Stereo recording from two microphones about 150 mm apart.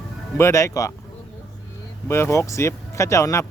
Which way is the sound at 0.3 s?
20° left (ahead or behind).